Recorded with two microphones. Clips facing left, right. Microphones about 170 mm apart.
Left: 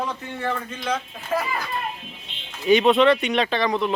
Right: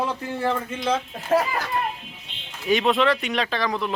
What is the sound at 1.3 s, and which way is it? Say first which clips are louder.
Speech: right 5 dB; 45° right (ahead or behind).